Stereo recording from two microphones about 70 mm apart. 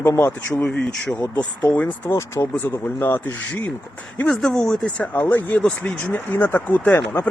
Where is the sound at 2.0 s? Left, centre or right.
Left.